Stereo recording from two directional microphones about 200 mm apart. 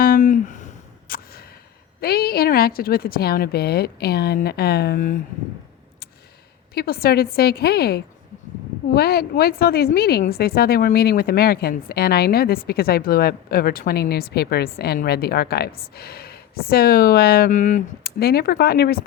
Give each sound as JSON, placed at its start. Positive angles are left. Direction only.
{"t": 0.0, "sound": "a sound", "side_deg": 45}
{"t": 2.0, "sound": "a woman's voice", "side_deg": 50}
{"t": 6.7, "sound": "a woman's voice", "side_deg": 50}